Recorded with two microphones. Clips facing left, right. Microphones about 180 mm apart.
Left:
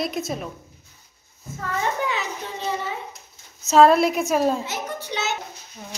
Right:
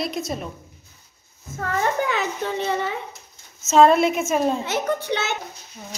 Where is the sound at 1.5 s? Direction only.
50° right (ahead or behind).